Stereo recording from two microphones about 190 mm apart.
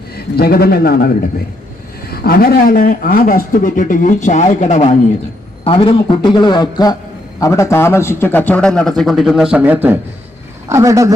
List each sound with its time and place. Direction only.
0.3 s a man's voice: 55° left (ahead or behind); by 4.9 s 35° left (ahead or behind)
5.6 s a man's voice: 25° left (ahead or behind); by 11.1 s 15° right (ahead or behind)